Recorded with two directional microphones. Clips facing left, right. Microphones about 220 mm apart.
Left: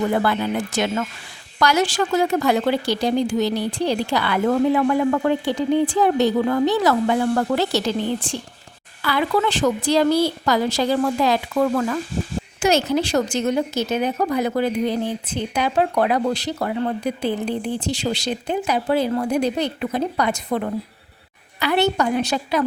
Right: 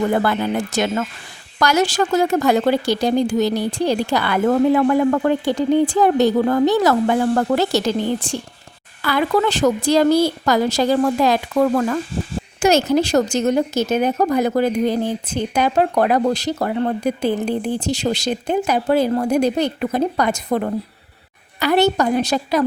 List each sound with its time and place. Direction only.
0.1 s a woman's voice: 45° right (ahead or behind)